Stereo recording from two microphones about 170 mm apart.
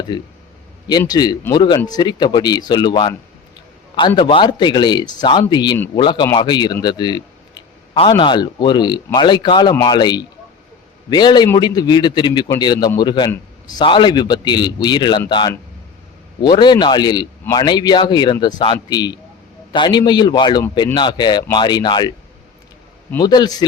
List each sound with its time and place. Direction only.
0.1 s a man's voice: 25° left (ahead or behind)
23.1 s a man's voice: 25° left (ahead or behind)